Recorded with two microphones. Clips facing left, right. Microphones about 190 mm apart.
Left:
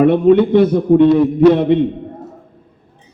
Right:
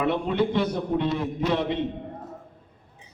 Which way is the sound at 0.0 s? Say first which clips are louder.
Left 14 dB; 55° left (ahead or behind).